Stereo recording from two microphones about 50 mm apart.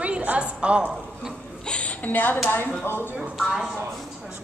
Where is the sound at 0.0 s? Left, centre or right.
Right.